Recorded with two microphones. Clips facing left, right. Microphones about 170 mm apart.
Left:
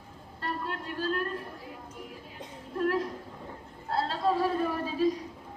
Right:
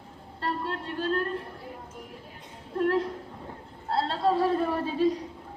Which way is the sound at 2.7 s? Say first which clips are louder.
Right 3 dB; 30° right (ahead or behind).